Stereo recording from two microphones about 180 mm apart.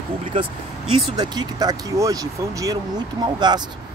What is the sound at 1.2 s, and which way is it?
Speech, 20° right (ahead or behind).